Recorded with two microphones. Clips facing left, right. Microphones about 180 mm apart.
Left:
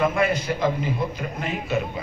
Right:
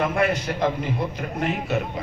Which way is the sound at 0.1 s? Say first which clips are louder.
Even; 60° right (ahead or behind).